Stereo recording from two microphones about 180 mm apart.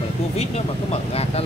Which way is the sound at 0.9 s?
35° left (ahead or behind).